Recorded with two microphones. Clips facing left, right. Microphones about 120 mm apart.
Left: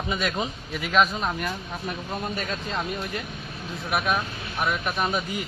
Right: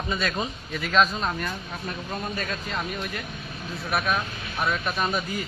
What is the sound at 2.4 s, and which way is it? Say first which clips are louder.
A man's voice: left 1 dB; 20° left (ahead or behind).